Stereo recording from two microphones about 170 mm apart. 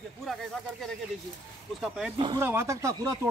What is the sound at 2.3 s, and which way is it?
Speech, 15° right (ahead or behind).